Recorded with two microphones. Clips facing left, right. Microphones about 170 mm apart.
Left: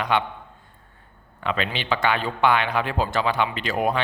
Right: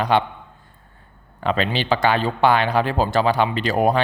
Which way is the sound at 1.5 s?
35° right (ahead or behind).